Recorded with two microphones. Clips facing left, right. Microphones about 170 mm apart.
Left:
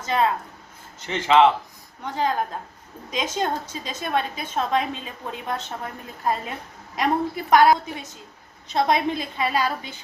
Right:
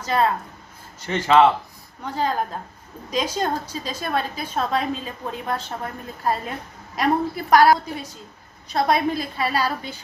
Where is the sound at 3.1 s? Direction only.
20° left (ahead or behind).